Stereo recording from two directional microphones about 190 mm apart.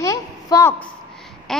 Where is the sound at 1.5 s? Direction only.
Centre (ahead or behind).